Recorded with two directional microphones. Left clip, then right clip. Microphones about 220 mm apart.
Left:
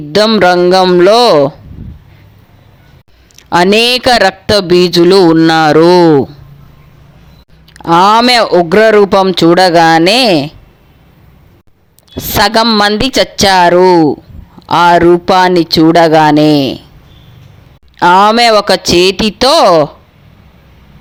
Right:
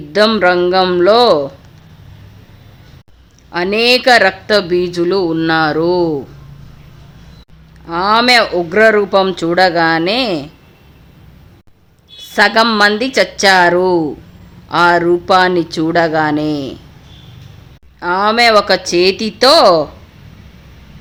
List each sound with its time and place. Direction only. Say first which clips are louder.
0.1 s speech: left 4 dB; 35° left (ahead or behind)
3.5 s speech: left 5 dB; 40° left (ahead or behind)
7.7 s speech: left 8 dB; 40° left (ahead or behind)
12.1 s speech: left 2 dB; 40° left (ahead or behind)
17.9 s speech: left 8 dB; 40° left (ahead or behind)